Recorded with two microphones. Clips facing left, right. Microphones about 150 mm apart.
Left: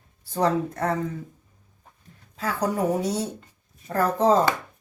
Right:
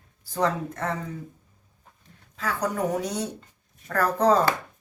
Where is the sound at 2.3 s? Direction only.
35° left (ahead or behind).